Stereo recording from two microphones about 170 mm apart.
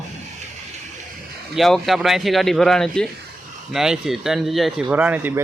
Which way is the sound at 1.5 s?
Centre (ahead or behind).